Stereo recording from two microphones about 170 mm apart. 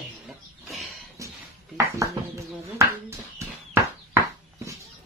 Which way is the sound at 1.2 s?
20° right (ahead or behind).